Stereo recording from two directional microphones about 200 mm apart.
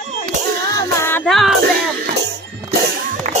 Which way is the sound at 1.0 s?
5° left (ahead or behind).